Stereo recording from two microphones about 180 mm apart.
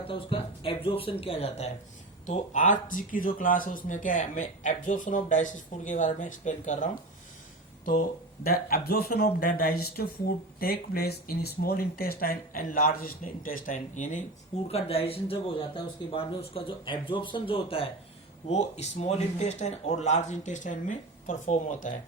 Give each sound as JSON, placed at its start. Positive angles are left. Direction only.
{"t": 0.1, "sound": "speech", "side_deg": 30}
{"t": 8.4, "sound": "speech", "side_deg": 55}
{"t": 14.7, "sound": "speech", "side_deg": 35}